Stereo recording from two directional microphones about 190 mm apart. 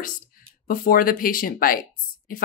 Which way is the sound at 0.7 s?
50° left (ahead or behind).